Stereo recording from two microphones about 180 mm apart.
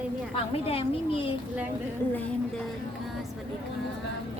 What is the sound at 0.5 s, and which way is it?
Speech, 30° left (ahead or behind).